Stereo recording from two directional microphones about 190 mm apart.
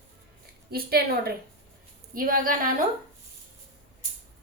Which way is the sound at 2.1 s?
50° right (ahead or behind).